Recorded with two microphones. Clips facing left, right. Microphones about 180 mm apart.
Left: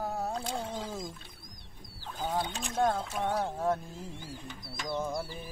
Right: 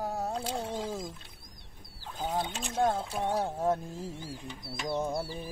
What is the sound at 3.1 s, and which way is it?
Speech, 30° right (ahead or behind).